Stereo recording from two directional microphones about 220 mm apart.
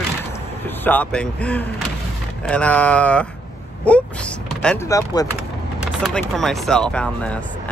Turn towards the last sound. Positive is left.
turn(degrees=5)  # may be behind; listen again after turning